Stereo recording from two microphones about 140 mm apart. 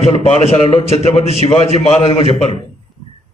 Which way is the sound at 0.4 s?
50° left (ahead or behind).